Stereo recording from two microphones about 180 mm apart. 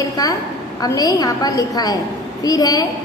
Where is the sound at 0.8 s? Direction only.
20° left (ahead or behind).